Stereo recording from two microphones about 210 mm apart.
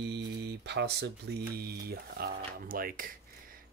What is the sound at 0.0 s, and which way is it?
Speech, 55° right (ahead or behind).